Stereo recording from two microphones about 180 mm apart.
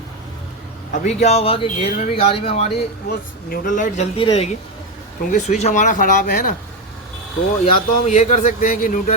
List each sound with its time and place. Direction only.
1.0 s a man's voice: 35° left (ahead or behind)
3.5 s speech: 50° left (ahead or behind)
4.2 s a man's voice: 30° left (ahead or behind)
5.3 s speech: 40° left (ahead or behind)
7.6 s a man's voice: 40° left (ahead or behind)